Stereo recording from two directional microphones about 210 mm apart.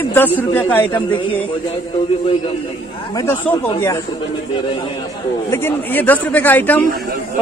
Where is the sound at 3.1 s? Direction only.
15° left (ahead or behind).